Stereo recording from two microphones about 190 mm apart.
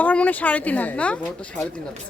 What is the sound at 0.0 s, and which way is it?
Speech, 5° left (ahead or behind).